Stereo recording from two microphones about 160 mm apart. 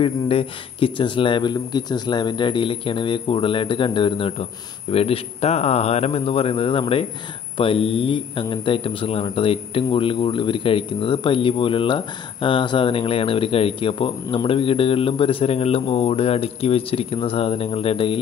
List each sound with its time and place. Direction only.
0.0 s speech: 35° left (ahead or behind)